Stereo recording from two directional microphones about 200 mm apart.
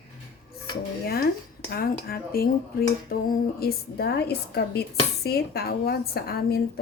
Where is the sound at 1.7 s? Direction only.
50° left (ahead or behind).